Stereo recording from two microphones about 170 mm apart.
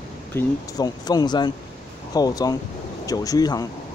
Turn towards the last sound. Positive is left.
turn(degrees=20)  # may be behind; listen again after turning